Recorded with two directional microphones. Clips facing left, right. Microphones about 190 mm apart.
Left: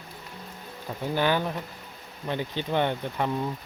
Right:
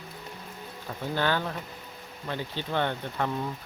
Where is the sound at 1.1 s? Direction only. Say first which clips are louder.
Left 3 dB; 15° left (ahead or behind).